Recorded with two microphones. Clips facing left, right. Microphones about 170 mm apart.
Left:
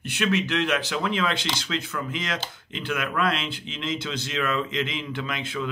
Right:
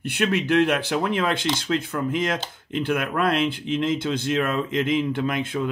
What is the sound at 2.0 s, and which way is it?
A man's voice, 50° right (ahead or behind).